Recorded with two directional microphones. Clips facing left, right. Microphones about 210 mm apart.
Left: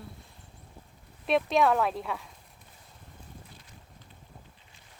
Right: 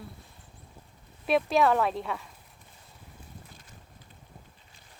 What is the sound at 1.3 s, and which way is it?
Speech, centre (ahead or behind).